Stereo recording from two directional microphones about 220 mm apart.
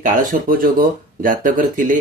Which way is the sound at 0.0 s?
35° right (ahead or behind).